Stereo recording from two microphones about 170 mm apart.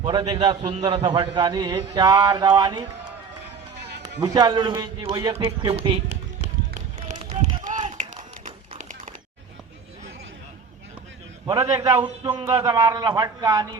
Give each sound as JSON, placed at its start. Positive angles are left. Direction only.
{"t": 0.0, "sound": "a man's voice", "side_deg": -30}
{"t": 3.8, "sound": "music", "side_deg": -85}
{"t": 4.2, "sound": "a man's voice", "side_deg": -25}
{"t": 7.9, "sound": "run", "side_deg": -50}
{"t": 8.8, "sound": "a sound", "side_deg": -50}
{"t": 11.4, "sound": "a man's voice", "side_deg": -25}